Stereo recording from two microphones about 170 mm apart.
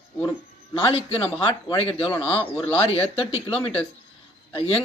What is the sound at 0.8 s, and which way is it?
Speech, 35° left (ahead or behind).